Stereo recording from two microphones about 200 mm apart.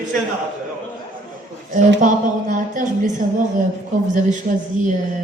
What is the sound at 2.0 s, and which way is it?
A woman's voice, 40° right (ahead or behind).